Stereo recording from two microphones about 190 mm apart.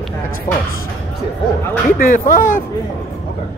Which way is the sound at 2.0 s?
45° left (ahead or behind).